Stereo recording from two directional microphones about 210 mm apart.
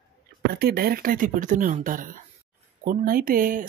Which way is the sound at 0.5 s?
50° right (ahead or behind).